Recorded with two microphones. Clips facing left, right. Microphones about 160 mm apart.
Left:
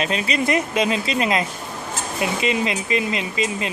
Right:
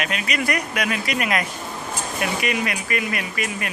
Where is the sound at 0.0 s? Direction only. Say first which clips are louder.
Left 3 dB; 30° left (ahead or behind).